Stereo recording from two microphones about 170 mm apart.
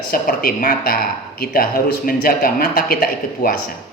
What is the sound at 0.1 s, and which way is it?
Speech, 55° left (ahead or behind).